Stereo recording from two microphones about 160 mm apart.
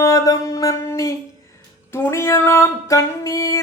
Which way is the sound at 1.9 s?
15° left (ahead or behind).